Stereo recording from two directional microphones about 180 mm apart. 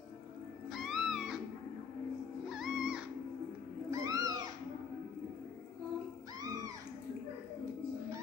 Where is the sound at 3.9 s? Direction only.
20° right (ahead or behind).